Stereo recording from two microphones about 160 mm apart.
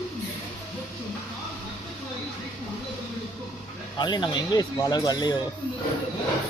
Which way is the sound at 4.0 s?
25° left (ahead or behind).